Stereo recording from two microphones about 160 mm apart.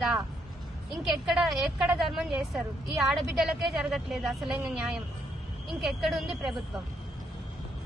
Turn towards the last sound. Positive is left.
turn(degrees=0)  # may be behind; listen again after turning